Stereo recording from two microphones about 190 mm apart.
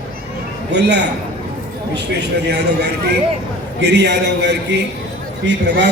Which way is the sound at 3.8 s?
60° right (ahead or behind).